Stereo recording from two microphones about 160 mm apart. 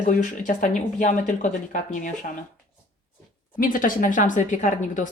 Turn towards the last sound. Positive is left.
turn(degrees=50)  # may be behind; listen again after turning